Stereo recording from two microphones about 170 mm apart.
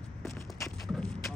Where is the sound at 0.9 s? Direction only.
Centre (ahead or behind).